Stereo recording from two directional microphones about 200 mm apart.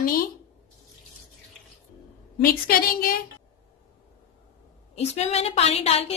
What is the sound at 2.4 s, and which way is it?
Speech, 45° left (ahead or behind).